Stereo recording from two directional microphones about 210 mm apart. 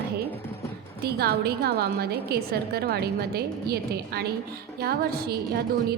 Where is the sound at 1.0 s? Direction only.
50° right (ahead or behind).